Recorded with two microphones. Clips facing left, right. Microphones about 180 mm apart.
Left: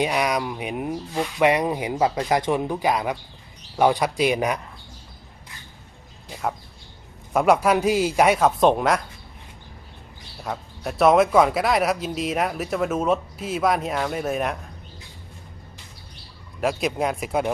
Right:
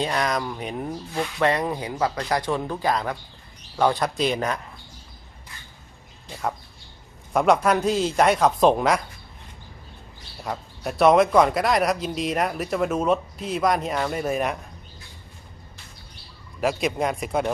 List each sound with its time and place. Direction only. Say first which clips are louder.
0.0 s speech: left 2 dB; 10° left (ahead or behind)
7.3 s a man's voice: left 1 dB; 5° left (ahead or behind)
10.4 s a man's voice: even; centre (ahead or behind)
16.6 s a man's voice: even; centre (ahead or behind)